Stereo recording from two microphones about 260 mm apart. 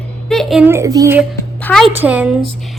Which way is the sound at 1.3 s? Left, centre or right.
Centre.